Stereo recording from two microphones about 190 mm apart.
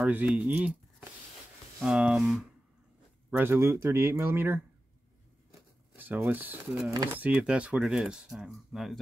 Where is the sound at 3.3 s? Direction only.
10° right (ahead or behind).